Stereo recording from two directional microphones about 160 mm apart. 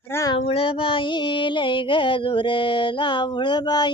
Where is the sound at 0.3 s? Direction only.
35° left (ahead or behind).